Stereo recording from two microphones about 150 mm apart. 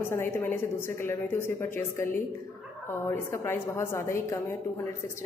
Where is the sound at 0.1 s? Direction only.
15° left (ahead or behind).